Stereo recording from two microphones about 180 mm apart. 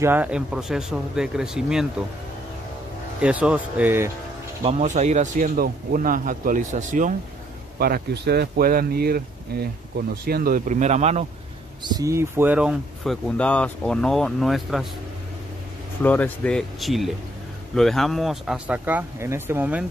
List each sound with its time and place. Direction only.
0.0 s speech: 10° right (ahead or behind)
3.2 s speech: 5° right (ahead or behind)
4.6 s speech: 40° right (ahead or behind)
7.8 s speech: 60° right (ahead or behind); by 11.2 s 35° right (ahead or behind)
11.8 s speech: 20° right (ahead or behind); by 14.9 s centre (ahead or behind)
16.0 s speech: 10° left (ahead or behind); by 19.9 s 10° right (ahead or behind)